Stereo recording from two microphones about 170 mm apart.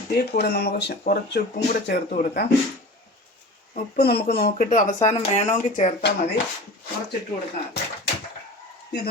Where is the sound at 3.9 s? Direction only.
70° left (ahead or behind).